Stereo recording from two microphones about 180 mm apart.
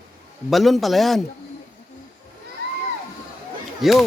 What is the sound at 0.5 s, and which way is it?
Speech, centre (ahead or behind).